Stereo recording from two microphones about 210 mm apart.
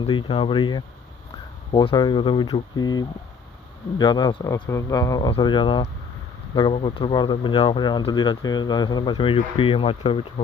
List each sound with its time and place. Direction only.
0.0 s speech: 25° left (ahead or behind)